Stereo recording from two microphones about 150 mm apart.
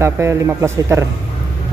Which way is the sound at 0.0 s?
20° right (ahead or behind).